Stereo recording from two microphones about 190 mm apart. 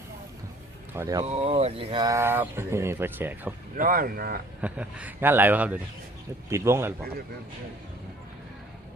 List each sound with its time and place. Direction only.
0.9 s speech: 15° right (ahead or behind)
1.2 s speech: 30° right (ahead or behind); by 3.5 s 10° right (ahead or behind)
3.8 s speech: 50° right (ahead or behind)
4.6 s speech: 5° right (ahead or behind)